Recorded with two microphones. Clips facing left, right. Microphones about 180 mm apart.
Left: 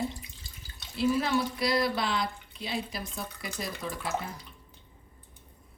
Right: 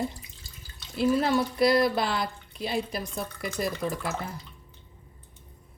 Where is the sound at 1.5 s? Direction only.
55° right (ahead or behind).